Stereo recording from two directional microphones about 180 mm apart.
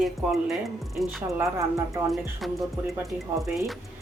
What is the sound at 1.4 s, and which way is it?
Speech, 15° right (ahead or behind).